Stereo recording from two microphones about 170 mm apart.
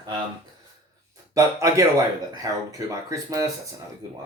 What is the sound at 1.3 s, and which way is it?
Speech, 20° right (ahead or behind).